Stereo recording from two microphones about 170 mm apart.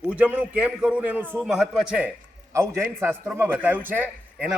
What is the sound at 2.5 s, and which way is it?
A man's voice, 15° right (ahead or behind).